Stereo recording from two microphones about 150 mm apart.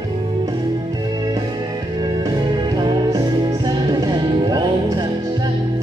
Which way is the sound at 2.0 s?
25° right (ahead or behind).